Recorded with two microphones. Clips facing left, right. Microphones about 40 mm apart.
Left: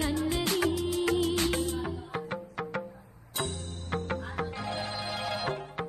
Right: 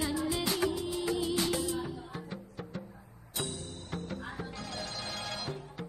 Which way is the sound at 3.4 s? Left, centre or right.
Left.